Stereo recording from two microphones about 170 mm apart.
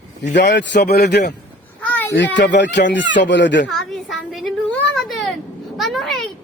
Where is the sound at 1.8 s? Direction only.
10° left (ahead or behind).